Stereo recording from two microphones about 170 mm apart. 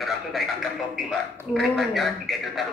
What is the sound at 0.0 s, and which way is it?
A man's voice, centre (ahead or behind).